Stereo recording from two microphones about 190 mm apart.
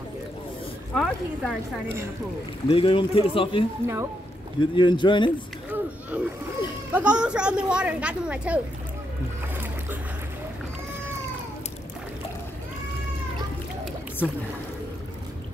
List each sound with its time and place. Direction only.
0.9 s speech: centre (ahead or behind)
2.7 s a man's voice: 25° left (ahead or behind)
3.8 s speech: 15° right (ahead or behind)
4.6 s a man's voice: 25° left (ahead or behind)
5.7 s a sound: 5° right (ahead or behind)
6.9 s speech: 5° right (ahead or behind)